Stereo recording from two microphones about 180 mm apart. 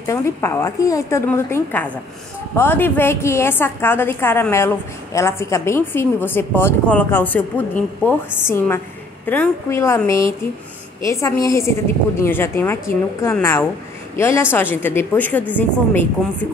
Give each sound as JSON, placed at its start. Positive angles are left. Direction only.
{"t": 0.0, "sound": "a woman's voice", "side_deg": 15}